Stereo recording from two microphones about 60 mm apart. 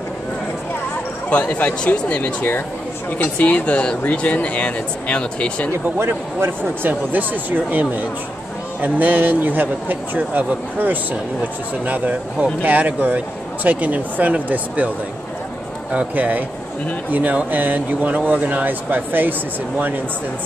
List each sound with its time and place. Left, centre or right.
1.3 s speech: left
6.0 s speech: right
15.9 s speech: right